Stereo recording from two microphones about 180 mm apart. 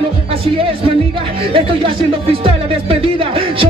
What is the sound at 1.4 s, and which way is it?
Speech, 30° right (ahead or behind).